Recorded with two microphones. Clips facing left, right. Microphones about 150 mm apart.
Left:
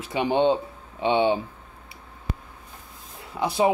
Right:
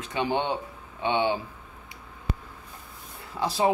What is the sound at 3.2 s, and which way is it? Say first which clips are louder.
Speech: left 3 dB; 20° left (ahead or behind).